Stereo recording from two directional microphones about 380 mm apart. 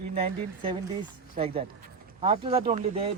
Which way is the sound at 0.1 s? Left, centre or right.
Centre.